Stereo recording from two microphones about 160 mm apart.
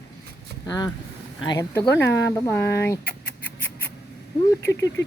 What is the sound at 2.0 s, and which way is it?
Speech, 90° left.